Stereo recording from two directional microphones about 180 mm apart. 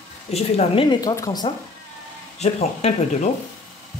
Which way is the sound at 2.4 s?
35° left (ahead or behind).